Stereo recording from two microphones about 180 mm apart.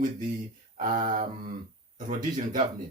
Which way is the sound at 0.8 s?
50° right (ahead or behind).